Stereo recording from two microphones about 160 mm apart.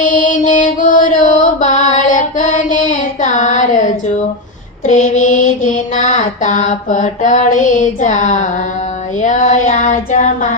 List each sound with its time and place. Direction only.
0.0 s mantra: 55° left (ahead or behind)